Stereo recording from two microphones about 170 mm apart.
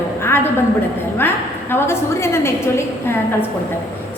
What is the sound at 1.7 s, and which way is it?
A woman's voice, 15° left (ahead or behind).